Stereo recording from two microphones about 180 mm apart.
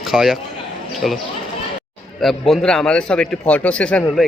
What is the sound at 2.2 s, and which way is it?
A man's voice, centre (ahead or behind).